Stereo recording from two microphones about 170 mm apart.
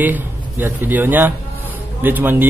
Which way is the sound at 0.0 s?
10° right (ahead or behind).